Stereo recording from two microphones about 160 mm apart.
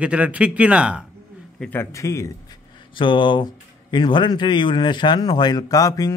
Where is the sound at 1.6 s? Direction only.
15° left (ahead or behind).